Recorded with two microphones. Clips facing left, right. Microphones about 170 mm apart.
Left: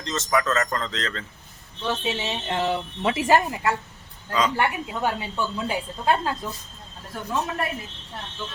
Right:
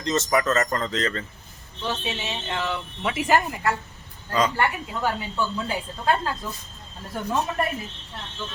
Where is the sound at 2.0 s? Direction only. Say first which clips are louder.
Left 3 dB; 30° left (ahead or behind).